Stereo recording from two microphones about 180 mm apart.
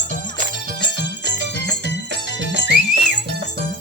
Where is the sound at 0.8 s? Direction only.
75° left (ahead or behind).